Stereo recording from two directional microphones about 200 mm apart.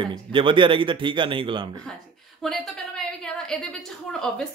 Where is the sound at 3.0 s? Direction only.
5° left (ahead or behind).